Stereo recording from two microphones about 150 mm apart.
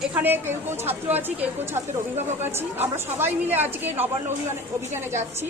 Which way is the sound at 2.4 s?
15° right (ahead or behind).